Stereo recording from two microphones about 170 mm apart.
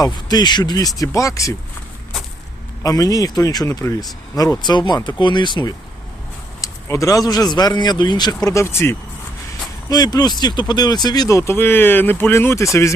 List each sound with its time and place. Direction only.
0.0 s speech: 25° left (ahead or behind)
2.8 s speech: 20° left (ahead or behind)